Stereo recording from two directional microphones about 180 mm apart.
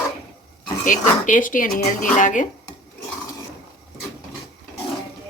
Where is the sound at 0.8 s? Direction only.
45° left (ahead or behind).